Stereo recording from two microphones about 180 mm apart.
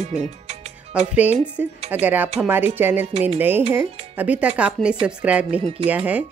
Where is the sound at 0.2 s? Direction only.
35° right (ahead or behind).